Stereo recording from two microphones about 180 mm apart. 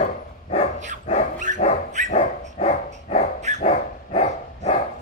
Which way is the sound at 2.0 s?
40° left (ahead or behind).